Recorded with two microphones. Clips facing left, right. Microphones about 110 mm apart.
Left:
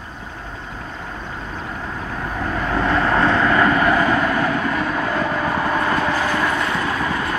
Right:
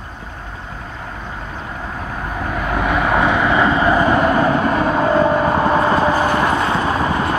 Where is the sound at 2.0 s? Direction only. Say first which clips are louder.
Right 1 dB; 10° right (ahead or behind).